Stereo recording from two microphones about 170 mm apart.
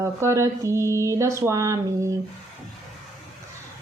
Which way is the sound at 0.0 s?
15° right (ahead or behind).